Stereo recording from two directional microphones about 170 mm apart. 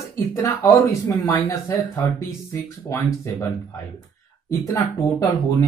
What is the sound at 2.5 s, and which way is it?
Speech, 15° left (ahead or behind).